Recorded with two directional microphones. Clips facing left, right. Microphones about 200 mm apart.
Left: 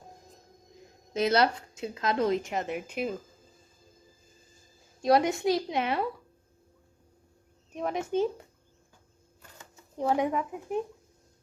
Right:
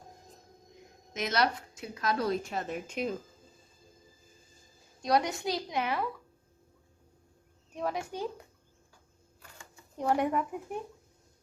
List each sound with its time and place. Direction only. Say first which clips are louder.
1.1 s a woman's voice: left 5 dB; 30° left (ahead or behind); by 3.1 s 10° left (ahead or behind)
5.0 s a woman's voice: left 5 dB; 25° left (ahead or behind)
7.7 s a woman's voice: left 4 dB; 20° left (ahead or behind)
10.0 s speech: left 1 dB; 5° left (ahead or behind)